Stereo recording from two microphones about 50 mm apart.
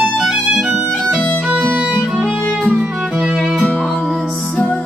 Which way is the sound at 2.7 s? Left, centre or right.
Right.